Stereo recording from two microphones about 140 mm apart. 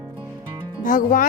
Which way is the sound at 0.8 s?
70° left (ahead or behind).